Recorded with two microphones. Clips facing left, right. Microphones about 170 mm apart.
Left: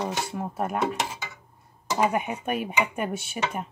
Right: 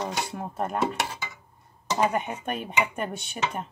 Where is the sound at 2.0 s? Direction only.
10° left (ahead or behind).